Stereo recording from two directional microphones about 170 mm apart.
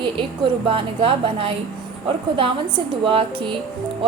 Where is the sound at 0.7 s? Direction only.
30° right (ahead or behind).